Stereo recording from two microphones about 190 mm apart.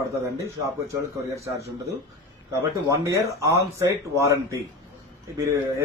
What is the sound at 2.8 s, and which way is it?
Speech, 15° right (ahead or behind).